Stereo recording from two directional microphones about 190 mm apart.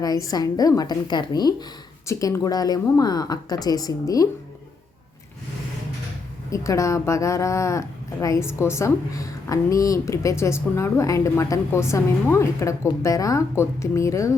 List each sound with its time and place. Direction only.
0.0 s a woman's voice: 20° left (ahead or behind)
6.5 s a woman's voice: 15° left (ahead or behind)